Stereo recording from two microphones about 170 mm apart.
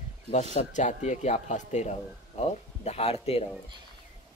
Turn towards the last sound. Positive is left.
turn(degrees=35)  # may be behind; listen again after turning